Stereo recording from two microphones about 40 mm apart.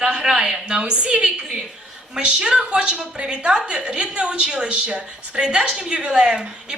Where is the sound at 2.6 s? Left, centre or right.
Right.